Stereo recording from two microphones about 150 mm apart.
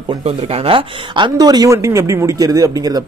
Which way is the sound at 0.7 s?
35° right (ahead or behind).